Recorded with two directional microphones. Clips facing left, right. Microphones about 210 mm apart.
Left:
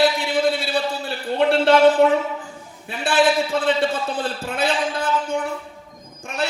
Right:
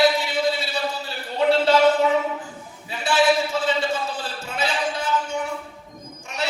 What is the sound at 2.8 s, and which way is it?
A man's voice, 55° left (ahead or behind).